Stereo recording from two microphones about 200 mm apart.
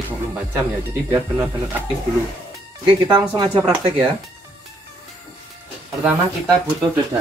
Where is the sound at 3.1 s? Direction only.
20° right (ahead or behind).